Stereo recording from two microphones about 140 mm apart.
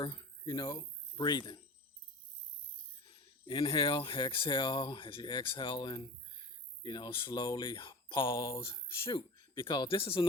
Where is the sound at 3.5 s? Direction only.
35° left (ahead or behind).